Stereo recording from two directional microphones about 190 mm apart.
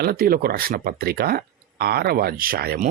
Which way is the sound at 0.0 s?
55° right (ahead or behind).